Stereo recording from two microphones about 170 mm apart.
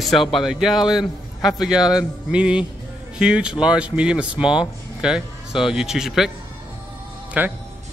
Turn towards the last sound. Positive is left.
turn(degrees=-10)  # may be behind; listen again after turning